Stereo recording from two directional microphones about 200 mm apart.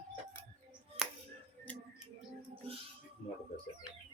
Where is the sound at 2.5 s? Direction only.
30° right (ahead or behind).